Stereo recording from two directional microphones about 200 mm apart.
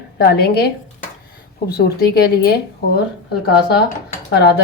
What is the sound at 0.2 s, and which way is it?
A woman's voice, 50° left (ahead or behind).